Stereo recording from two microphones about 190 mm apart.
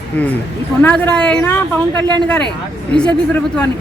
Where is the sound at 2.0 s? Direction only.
20° right (ahead or behind).